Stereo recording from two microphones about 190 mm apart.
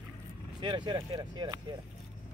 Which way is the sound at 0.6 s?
25° right (ahead or behind).